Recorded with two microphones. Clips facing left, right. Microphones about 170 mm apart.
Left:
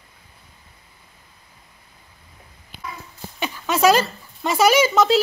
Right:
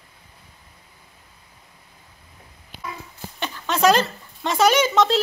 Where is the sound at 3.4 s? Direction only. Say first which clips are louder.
Left 1 dB; 10° left (ahead or behind).